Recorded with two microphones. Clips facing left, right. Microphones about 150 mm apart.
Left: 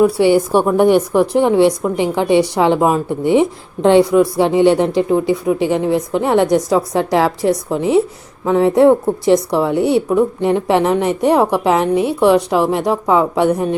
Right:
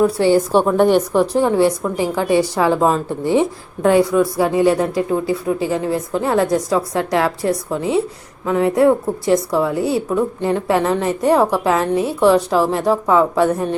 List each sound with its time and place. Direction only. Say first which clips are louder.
0.0 s a woman's voice: left 2 dB; 15° left (ahead or behind)